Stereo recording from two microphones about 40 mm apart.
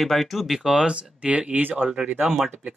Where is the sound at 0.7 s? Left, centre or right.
Right.